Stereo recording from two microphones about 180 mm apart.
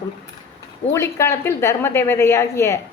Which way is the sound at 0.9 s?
15° left (ahead or behind).